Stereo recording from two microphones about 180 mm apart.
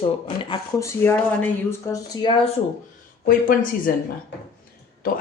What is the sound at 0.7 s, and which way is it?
Speech, 15° left (ahead or behind).